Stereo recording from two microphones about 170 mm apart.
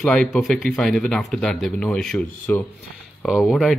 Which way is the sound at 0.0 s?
5° left (ahead or behind).